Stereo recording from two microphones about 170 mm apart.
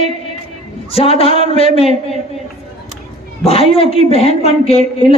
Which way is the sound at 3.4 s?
35° left (ahead or behind).